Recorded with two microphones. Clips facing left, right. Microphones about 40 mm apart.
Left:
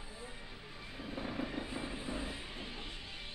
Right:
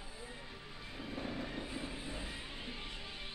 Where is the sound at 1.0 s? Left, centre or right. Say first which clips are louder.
Left 2 dB; centre.